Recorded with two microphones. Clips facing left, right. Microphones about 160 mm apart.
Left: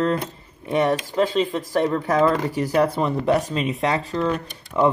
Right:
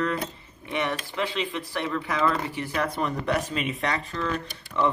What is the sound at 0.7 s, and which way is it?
Speech, 40° left (ahead or behind).